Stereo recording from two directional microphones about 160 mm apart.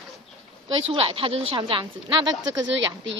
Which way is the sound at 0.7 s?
35° right (ahead or behind).